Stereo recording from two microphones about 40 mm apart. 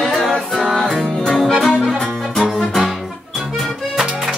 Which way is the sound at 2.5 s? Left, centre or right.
Centre.